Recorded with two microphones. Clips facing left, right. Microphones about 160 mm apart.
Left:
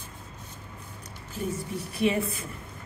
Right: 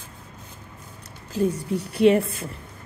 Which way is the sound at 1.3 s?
80° right.